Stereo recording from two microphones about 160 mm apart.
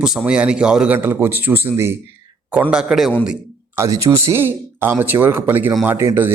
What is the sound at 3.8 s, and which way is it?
A man's voice, 20° right (ahead or behind).